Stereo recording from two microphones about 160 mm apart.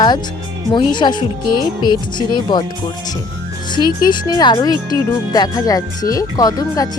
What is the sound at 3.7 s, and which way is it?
Speech, 25° left (ahead or behind).